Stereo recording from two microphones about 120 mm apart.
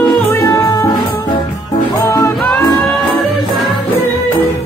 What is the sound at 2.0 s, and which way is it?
Music, 20° left (ahead or behind).